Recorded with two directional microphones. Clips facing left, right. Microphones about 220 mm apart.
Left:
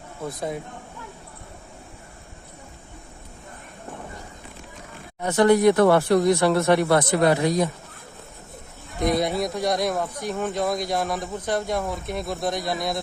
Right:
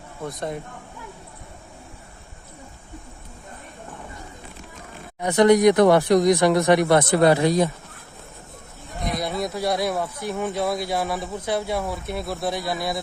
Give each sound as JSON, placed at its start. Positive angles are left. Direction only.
{"t": 0.2, "sound": "speech", "side_deg": 0}
{"t": 5.2, "sound": "speech", "side_deg": -20}
{"t": 7.1, "sound": "speech", "side_deg": -30}
{"t": 9.4, "sound": "speech", "side_deg": -5}